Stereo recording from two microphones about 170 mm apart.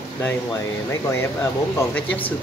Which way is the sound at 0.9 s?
15° left (ahead or behind).